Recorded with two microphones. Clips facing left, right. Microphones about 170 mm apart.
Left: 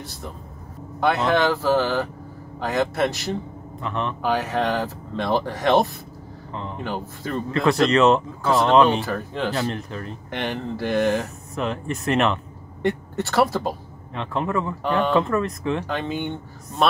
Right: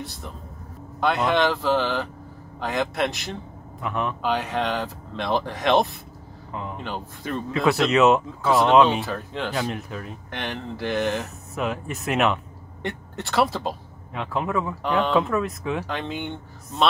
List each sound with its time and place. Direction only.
1.0 s speech: 5° left (ahead or behind)
6.5 s a sound: 5° right (ahead or behind)
6.8 s speech: 5° left (ahead or behind)
10.4 s speech: 10° left (ahead or behind)
11.5 s speech: 5° right (ahead or behind)